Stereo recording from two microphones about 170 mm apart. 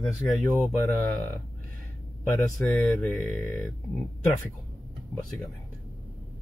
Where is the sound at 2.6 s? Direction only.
10° left (ahead or behind).